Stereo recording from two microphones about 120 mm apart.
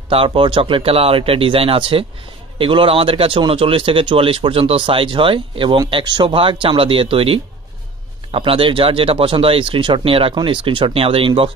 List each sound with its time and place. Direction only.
0.1 s speech: 50° right (ahead or behind)